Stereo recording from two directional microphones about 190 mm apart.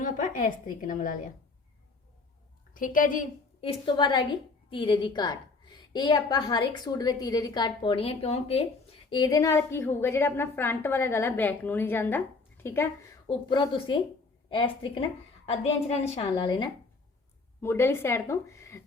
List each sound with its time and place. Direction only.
0.0 s a woman's voice: 45° left (ahead or behind)
2.7 s a woman's voice: 45° left (ahead or behind)
3.6 s a woman's voice: 25° left (ahead or behind); by 12.9 s 10° left (ahead or behind)
13.2 s a woman's voice: 25° left (ahead or behind)
17.6 s a woman's voice: 15° left (ahead or behind)